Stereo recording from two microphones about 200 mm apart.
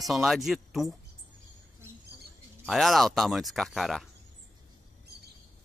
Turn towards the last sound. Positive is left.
turn(degrees=0)  # may be behind; listen again after turning